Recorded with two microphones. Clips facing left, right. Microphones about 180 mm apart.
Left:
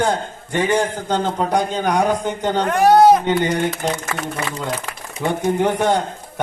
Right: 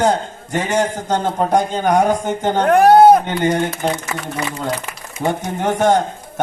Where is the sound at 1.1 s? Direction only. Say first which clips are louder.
Right 2 dB; 45° right (ahead or behind).